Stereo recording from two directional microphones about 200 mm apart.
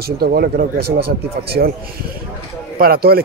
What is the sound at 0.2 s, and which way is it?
Speech, 50° right (ahead or behind).